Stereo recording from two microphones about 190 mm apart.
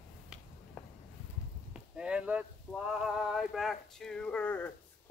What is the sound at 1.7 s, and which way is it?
Speech, 5° right (ahead or behind).